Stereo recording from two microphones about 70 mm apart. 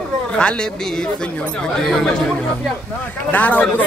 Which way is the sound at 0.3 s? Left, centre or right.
Centre.